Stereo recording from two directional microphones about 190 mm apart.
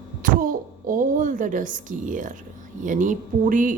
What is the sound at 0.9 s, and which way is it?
A woman's voice, 45° right (ahead or behind).